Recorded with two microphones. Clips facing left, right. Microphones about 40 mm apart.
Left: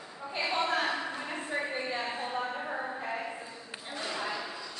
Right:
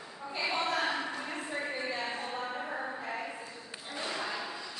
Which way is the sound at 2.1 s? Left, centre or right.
Left.